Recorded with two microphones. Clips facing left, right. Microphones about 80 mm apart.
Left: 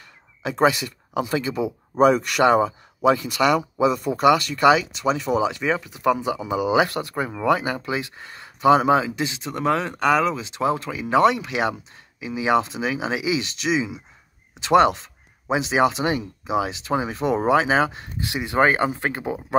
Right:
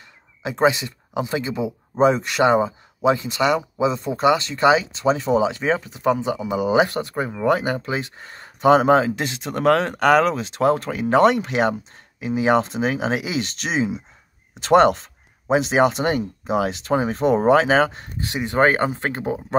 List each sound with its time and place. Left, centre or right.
0.4 s speech: right
6.2 s speech: left
6.8 s speech: right
7.6 s speech: right